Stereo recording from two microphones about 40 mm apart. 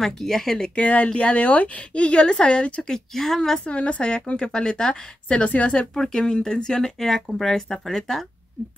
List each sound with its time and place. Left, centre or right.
0.0 s speech: centre
0.7 s speech: left
2.8 s speech: centre
3.5 s a woman's voice: left
5.3 s speech: left
5.9 s speech: centre